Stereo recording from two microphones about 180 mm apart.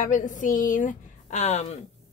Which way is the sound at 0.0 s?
45° left (ahead or behind).